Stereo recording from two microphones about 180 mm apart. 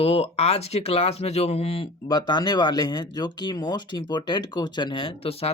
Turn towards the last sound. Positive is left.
turn(degrees=30)  # may be behind; listen again after turning